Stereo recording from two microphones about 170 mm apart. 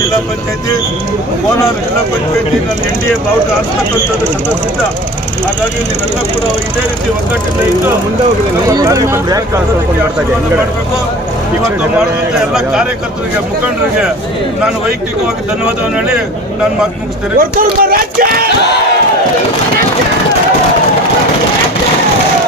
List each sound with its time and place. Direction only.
8.6 s speech: 20° right (ahead or behind)
12.5 s speech: 5° right (ahead or behind)
15.6 s speech: 5° right (ahead or behind)
17.3 s speech: 60° right (ahead or behind)